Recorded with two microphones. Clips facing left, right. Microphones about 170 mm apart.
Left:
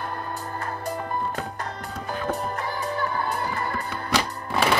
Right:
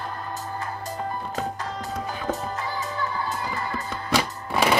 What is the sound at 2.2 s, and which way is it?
Music, 60° left (ahead or behind).